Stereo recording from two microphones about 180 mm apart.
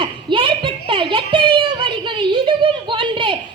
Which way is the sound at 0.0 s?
25° right (ahead or behind).